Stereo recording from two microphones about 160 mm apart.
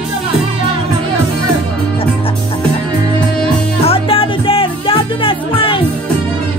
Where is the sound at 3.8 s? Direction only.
35° left (ahead or behind).